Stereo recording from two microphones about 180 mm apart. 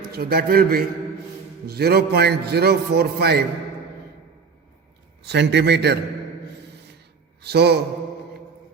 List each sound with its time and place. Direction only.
0.1 s a man's voice: 60° right (ahead or behind)
5.2 s a man's voice: 70° right (ahead or behind)
7.4 s a man's voice: 65° right (ahead or behind)